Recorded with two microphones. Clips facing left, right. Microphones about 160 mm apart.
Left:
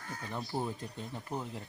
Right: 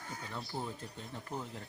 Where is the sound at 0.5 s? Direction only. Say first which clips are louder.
Left 5 dB; 55° left (ahead or behind).